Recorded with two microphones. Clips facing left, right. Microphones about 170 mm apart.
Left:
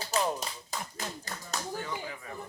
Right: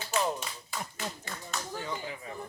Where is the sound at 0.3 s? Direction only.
40° left (ahead or behind).